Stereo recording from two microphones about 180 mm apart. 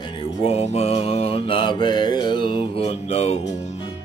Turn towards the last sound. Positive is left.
turn(degrees=35)  # may be behind; listen again after turning